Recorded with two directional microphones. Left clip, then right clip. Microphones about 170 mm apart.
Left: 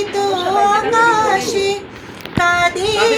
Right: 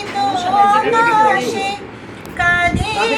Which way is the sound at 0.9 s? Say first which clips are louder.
Right 1 dB; 40° left (ahead or behind).